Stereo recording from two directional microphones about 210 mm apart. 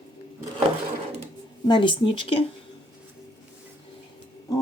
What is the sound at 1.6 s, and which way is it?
Speech, 25° left (ahead or behind).